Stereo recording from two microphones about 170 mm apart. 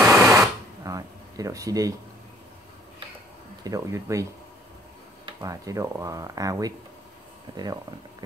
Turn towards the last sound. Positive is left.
turn(degrees=-30)  # may be behind; listen again after turning